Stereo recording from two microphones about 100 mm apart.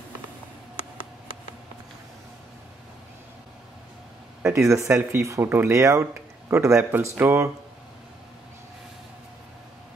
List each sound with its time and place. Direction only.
4.4 s speech: 25° right (ahead or behind)